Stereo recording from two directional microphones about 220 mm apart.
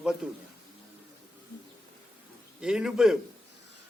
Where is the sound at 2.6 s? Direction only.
5° right (ahead or behind).